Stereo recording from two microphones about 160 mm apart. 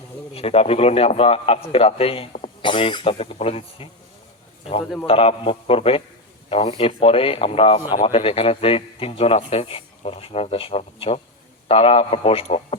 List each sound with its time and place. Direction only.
0.3 s a man's voice: 40° left (ahead or behind)